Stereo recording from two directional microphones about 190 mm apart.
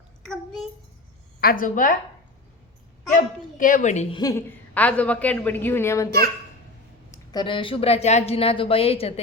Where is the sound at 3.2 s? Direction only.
45° left (ahead or behind).